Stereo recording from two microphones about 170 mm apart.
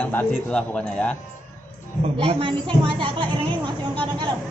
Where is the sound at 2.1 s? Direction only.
35° right (ahead or behind).